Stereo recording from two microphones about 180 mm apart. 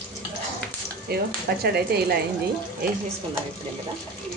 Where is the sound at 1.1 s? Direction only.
60° right (ahead or behind).